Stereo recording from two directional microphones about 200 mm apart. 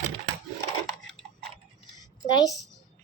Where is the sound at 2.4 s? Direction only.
Centre (ahead or behind).